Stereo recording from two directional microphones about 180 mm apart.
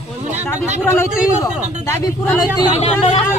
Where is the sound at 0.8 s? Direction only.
15° left (ahead or behind).